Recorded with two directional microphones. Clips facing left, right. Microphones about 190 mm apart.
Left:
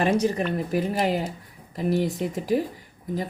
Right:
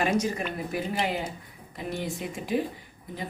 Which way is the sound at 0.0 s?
35° left (ahead or behind).